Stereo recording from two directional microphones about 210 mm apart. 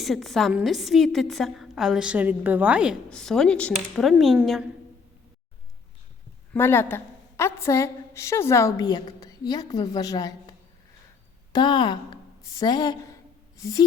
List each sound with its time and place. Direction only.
0.0 s a woman's voice: centre (ahead or behind)
6.5 s a woman's voice: 10° left (ahead or behind)
11.5 s a woman's voice: 20° left (ahead or behind)